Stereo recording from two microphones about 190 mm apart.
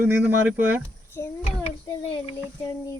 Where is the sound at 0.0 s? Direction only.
10° right (ahead or behind).